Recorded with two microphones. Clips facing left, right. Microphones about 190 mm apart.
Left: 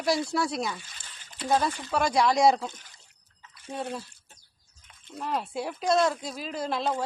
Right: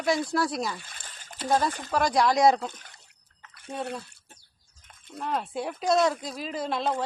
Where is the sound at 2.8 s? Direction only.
65° right (ahead or behind).